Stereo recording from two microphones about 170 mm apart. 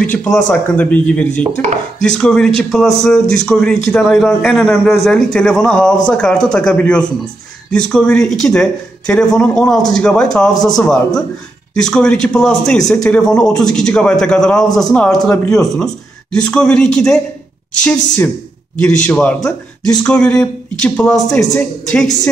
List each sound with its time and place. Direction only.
0.0 s a man's voice: 10° left (ahead or behind)
10.5 s a man's voice: 25° left (ahead or behind)
11.7 s a man's voice: 5° left (ahead or behind)